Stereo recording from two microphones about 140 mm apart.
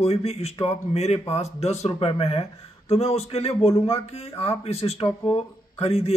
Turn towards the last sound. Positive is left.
turn(degrees=45)  # may be behind; listen again after turning